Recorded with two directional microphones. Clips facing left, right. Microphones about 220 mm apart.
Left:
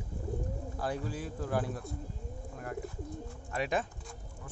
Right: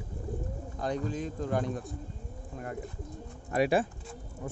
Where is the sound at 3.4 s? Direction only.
10° right (ahead or behind).